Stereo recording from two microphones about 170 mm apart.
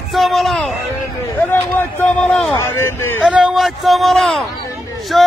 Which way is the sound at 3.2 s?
5° right (ahead or behind).